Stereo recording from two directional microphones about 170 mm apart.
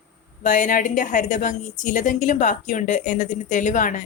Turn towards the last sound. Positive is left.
turn(degrees=50)  # may be behind; listen again after turning